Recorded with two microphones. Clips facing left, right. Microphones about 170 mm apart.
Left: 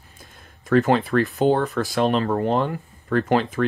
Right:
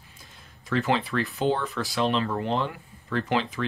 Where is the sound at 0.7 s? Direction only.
45° left (ahead or behind).